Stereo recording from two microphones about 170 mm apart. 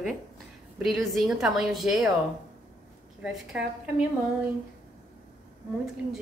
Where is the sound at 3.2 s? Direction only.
5° right (ahead or behind).